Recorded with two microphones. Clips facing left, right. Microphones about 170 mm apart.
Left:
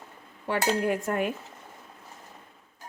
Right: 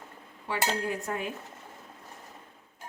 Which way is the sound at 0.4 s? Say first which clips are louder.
Left 5 dB; 60° left (ahead or behind).